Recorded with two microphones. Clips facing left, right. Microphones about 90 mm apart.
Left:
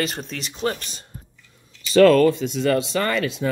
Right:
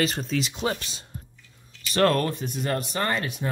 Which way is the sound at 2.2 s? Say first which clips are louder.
Left 10 dB; 90° left.